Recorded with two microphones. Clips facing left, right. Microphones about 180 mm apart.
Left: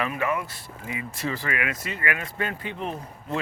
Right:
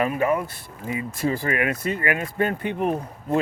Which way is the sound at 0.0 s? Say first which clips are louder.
Right 5 dB; 40° right (ahead or behind).